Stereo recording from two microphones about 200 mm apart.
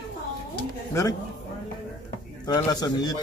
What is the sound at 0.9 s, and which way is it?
Speech, 15° left (ahead or behind).